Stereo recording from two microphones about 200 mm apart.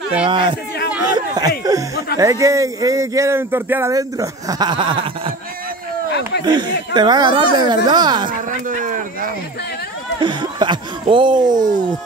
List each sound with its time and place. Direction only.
0.3 s speech: 25° right (ahead or behind)
6.4 s speech: 20° right (ahead or behind)
8.3 s speech: 40° right (ahead or behind)
10.2 s speech: 25° right (ahead or behind)